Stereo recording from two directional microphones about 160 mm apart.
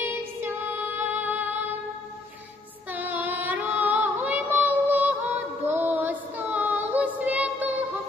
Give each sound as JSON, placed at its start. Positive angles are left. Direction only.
{"t": 0.0, "sound": "music", "side_deg": -15}
{"t": 2.9, "sound": "child singing", "side_deg": -10}